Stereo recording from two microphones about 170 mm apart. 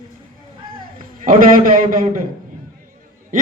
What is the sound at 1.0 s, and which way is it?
A man's voice, 55° right (ahead or behind).